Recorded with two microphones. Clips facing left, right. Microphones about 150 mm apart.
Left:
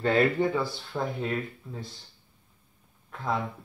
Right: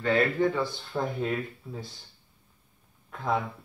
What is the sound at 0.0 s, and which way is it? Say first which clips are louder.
Speech: left 1 dB; 30° left (ahead or behind).